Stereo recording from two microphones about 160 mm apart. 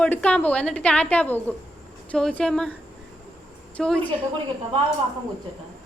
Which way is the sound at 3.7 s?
5° left (ahead or behind).